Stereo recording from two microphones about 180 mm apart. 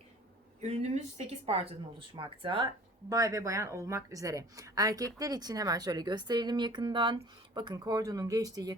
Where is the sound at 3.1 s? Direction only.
20° right (ahead or behind).